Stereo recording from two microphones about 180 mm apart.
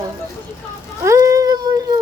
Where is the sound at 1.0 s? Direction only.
15° right (ahead or behind).